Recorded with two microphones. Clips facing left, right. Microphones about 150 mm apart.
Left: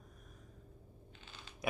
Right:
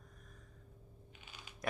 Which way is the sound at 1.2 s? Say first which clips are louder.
Left 1 dB; 10° right (ahead or behind).